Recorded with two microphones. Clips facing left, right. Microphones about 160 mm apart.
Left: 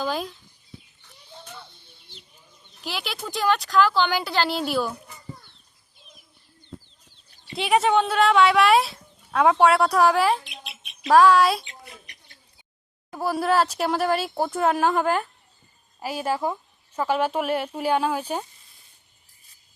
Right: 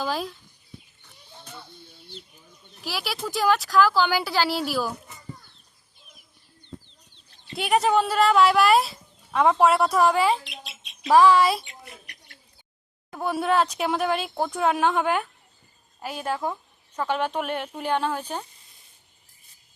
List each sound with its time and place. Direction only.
0.0 s speech: centre (ahead or behind)
2.8 s speech: 5° right (ahead or behind)
7.5 s speech: centre (ahead or behind)
13.1 s speech: centre (ahead or behind)